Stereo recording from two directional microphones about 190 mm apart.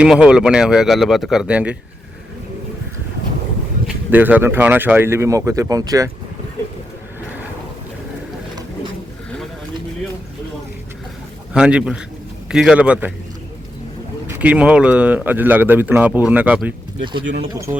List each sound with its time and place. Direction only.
0.0 s speech: 5° right (ahead or behind)
4.1 s speech: 10° right (ahead or behind)
11.5 s speech: 5° right (ahead or behind)
14.3 s speech: 5° right (ahead or behind)
17.0 s speech: 25° right (ahead or behind)